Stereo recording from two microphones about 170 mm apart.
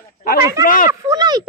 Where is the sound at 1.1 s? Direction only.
25° right (ahead or behind).